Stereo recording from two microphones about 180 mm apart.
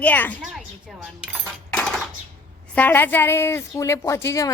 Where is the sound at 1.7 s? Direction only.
5° left (ahead or behind).